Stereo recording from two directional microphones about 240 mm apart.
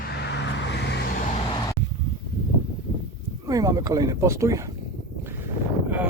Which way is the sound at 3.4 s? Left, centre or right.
Centre.